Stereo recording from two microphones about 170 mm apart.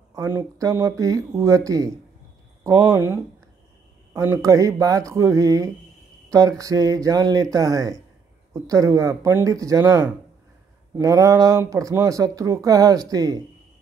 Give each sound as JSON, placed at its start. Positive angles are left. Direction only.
{"t": 0.1, "sound": "speech", "side_deg": -20}